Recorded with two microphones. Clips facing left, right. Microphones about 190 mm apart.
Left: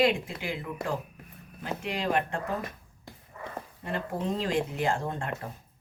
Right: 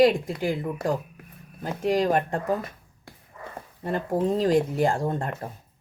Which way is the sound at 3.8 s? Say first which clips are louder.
Right 7 dB; 40° right (ahead or behind).